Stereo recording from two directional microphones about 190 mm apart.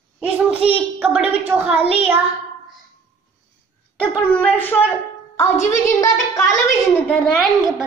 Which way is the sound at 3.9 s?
10° left (ahead or behind).